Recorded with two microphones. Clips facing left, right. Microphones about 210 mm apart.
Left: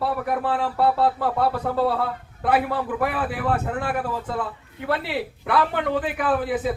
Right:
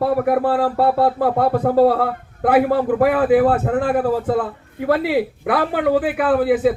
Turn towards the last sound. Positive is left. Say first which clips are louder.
# right 7 dB
turn(degrees=-60)  # may be behind; listen again after turning